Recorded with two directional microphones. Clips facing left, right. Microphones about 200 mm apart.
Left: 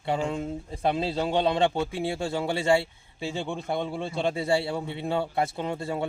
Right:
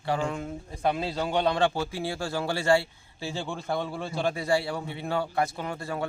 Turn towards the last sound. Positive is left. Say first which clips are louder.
# left 3 dB
turn(degrees=25)  # may be behind; listen again after turning